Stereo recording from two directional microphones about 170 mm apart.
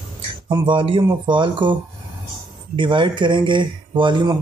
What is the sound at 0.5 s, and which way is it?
Speech, 25° right (ahead or behind).